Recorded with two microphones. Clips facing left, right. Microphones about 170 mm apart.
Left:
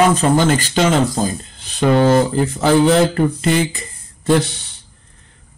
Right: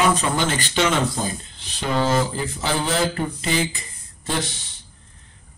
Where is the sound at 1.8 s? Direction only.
55° left (ahead or behind).